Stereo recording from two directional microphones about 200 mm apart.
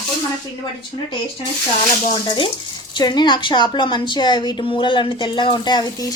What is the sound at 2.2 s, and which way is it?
Speech, 25° left (ahead or behind).